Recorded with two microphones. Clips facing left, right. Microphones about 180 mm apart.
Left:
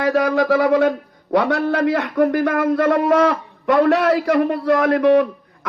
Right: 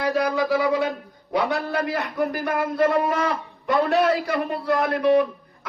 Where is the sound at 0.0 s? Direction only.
90° left.